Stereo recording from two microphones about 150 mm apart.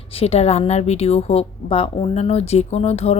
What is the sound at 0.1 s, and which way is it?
A woman's voice, 40° left (ahead or behind).